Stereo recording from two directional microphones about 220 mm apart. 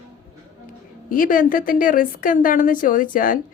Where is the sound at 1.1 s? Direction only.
40° left (ahead or behind).